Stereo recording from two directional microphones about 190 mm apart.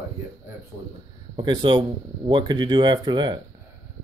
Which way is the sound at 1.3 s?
25° right (ahead or behind).